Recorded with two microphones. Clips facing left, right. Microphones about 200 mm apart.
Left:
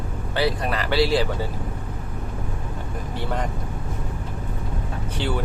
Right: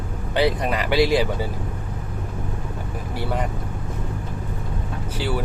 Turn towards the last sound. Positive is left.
turn(degrees=-5)  # may be behind; listen again after turning